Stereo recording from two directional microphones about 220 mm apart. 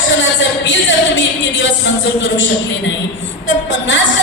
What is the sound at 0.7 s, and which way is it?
Music, 60° left (ahead or behind).